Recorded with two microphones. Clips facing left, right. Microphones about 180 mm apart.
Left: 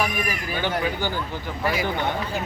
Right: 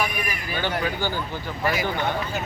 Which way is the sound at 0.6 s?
15° left (ahead or behind).